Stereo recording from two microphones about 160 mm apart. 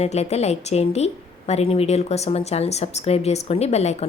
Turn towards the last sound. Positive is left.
turn(degrees=40)  # may be behind; listen again after turning